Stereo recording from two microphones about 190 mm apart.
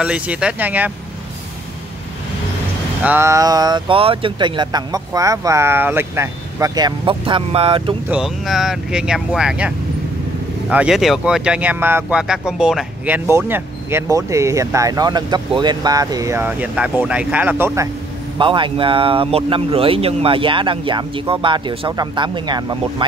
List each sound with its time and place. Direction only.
0.0 s speech: 5° right (ahead or behind)
3.0 s speech: 10° right (ahead or behind); by 7.9 s 30° right (ahead or behind)
8.1 s speech: centre (ahead or behind)
18.4 s speech: 25° right (ahead or behind)